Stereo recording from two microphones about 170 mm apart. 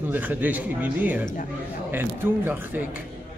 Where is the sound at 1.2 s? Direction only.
50° left (ahead or behind).